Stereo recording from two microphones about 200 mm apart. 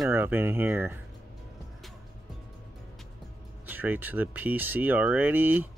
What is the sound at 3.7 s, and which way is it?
Speech, 10° right (ahead or behind).